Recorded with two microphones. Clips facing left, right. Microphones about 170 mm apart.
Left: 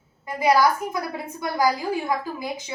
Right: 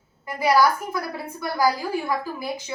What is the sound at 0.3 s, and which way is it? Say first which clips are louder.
A woman's voice: even; 20° left (ahead or behind).